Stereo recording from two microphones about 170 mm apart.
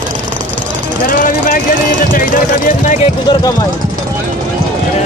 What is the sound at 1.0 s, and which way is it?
Vehicle, 55° left (ahead or behind).